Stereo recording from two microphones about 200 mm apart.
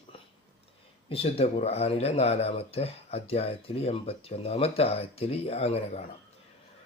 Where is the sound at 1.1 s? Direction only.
30° left (ahead or behind).